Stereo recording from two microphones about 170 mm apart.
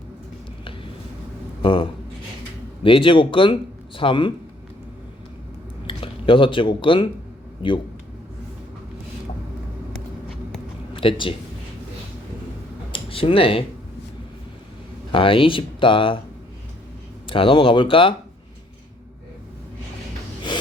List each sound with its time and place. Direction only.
1.6 s speech: 30° left (ahead or behind)
5.9 s speech: 30° left (ahead or behind)
10.9 s speech: 30° left (ahead or behind)
12.9 s a sound: 35° left (ahead or behind)
15.1 s speech: 30° left (ahead or behind)
17.2 s speech: 30° left (ahead or behind)